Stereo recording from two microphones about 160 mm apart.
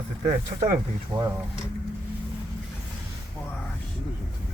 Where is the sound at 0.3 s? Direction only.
60° right (ahead or behind).